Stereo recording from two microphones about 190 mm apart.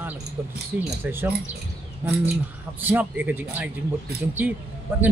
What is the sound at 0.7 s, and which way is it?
Speech, 10° right (ahead or behind).